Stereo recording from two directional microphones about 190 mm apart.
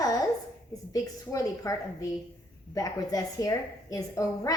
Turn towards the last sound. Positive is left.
turn(degrees=15)  # may be behind; listen again after turning